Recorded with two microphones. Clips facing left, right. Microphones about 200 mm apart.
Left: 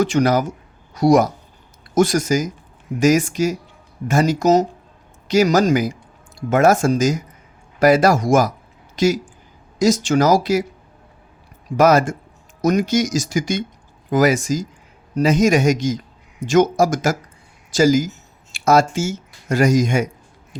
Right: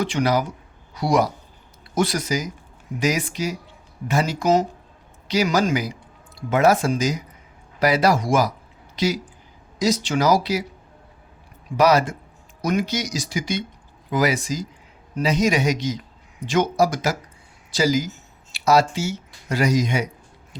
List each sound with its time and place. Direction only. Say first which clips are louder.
0.0 s speech: left 5 dB; 45° left (ahead or behind)
11.8 s speech: left 3 dB; 45° left (ahead or behind)